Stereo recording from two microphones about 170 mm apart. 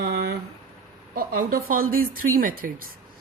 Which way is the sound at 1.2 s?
55° right (ahead or behind).